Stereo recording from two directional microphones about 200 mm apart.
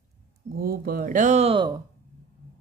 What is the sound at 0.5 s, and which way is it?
Speech, 50° right (ahead or behind).